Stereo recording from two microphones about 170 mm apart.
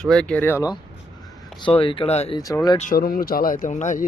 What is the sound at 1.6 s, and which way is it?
Speech, 30° left (ahead or behind).